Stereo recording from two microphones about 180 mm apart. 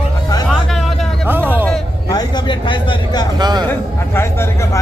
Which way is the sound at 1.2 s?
10° right (ahead or behind).